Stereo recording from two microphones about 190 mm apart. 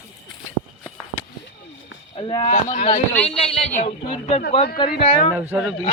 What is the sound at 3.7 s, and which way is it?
Speech, 35° left (ahead or behind).